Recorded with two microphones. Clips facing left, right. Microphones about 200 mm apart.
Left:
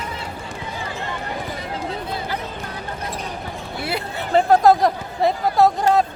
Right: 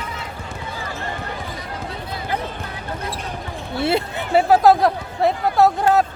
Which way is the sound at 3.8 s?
25° right (ahead or behind).